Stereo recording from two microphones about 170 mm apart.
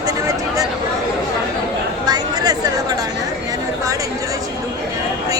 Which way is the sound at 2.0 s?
25° right (ahead or behind).